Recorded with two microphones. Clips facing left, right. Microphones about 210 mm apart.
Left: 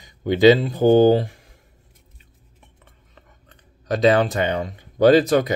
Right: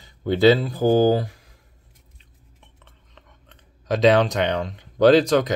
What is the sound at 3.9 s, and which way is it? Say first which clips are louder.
Speech: even; centre (ahead or behind).